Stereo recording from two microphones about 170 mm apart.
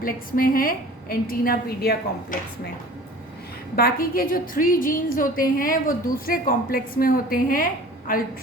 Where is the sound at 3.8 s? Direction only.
60° left (ahead or behind).